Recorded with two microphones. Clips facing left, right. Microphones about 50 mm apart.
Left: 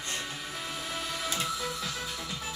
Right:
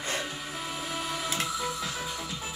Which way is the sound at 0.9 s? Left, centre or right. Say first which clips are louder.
Right 2 dB; centre.